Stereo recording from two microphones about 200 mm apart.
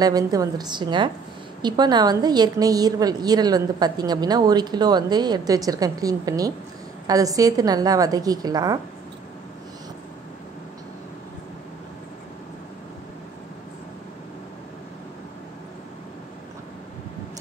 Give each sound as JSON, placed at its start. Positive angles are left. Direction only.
{"t": 0.0, "sound": "a woman's voice", "side_deg": -20}